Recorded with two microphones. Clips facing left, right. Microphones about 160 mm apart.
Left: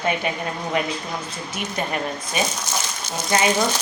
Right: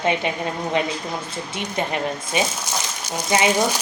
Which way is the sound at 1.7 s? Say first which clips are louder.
Right 2 dB; 20° right (ahead or behind).